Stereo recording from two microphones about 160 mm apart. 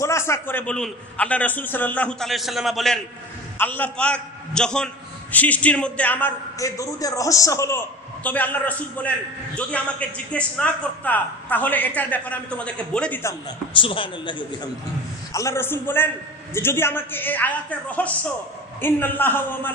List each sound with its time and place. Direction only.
0.0 s a man's voice: 15° left (ahead or behind); by 3.0 s centre (ahead or behind)
3.5 s a man's voice: 10° left (ahead or behind)
13.7 s a man's voice: 35° left (ahead or behind)
15.3 s a man's voice: 15° left (ahead or behind)